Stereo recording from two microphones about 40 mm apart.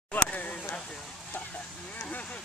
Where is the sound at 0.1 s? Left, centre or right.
Left.